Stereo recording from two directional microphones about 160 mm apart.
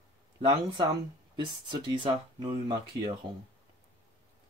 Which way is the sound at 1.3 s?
30° right (ahead or behind).